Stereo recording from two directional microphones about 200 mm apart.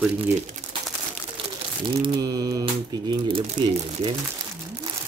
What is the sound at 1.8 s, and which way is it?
Speech, 25° right (ahead or behind).